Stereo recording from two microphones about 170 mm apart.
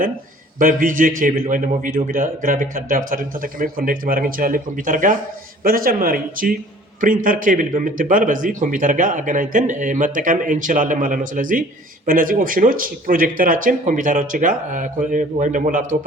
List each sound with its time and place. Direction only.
0.6 s speech: 55° right (ahead or behind)